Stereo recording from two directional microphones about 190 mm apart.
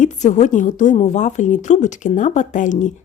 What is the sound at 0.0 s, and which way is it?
A woman's voice, 40° left (ahead or behind).